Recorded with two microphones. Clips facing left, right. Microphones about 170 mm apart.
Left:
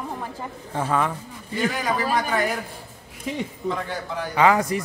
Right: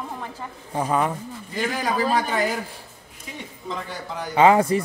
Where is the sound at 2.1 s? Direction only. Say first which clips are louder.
Right 1 dB; 25° right (ahead or behind).